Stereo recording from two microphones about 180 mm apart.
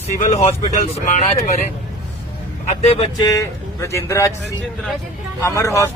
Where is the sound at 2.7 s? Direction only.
35° left (ahead or behind).